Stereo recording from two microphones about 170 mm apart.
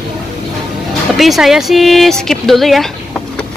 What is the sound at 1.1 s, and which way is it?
Speech, centre (ahead or behind).